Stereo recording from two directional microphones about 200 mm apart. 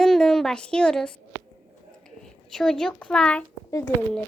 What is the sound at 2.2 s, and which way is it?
A child's voice, centre (ahead or behind).